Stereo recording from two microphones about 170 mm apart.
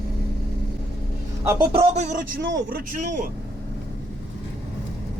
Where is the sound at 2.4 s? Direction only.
75° right (ahead or behind); by 3.1 s 55° right (ahead or behind).